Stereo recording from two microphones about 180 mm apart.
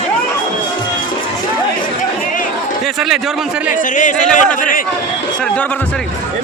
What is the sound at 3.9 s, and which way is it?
Speech, 45° left (ahead or behind).